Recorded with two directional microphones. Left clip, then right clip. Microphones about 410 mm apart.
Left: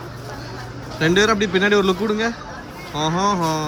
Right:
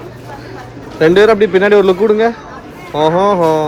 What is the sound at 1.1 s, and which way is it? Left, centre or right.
Speech, centre.